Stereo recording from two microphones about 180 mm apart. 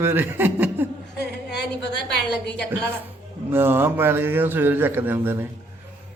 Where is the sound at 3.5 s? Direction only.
10° right (ahead or behind).